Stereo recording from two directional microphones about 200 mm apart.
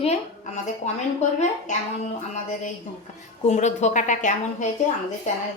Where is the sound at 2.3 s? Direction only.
35° left (ahead or behind).